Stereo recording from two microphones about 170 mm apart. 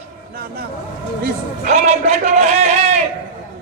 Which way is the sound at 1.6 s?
40° right (ahead or behind).